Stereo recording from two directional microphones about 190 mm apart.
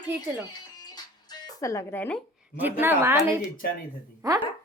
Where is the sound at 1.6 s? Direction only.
15° left (ahead or behind).